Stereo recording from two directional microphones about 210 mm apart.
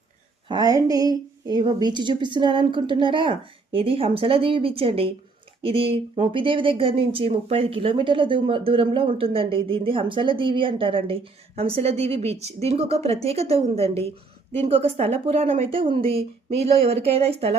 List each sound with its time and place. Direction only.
0.4 s speech: 20° right (ahead or behind)